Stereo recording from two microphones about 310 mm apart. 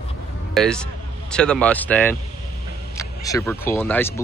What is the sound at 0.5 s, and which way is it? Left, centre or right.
A man's voice, centre.